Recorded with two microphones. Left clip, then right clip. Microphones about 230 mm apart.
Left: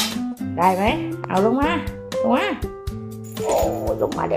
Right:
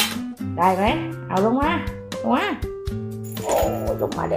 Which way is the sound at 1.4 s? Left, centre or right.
Centre.